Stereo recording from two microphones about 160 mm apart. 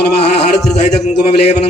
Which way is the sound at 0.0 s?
90° left.